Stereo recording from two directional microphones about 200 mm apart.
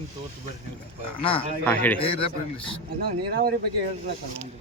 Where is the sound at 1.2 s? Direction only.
25° left (ahead or behind).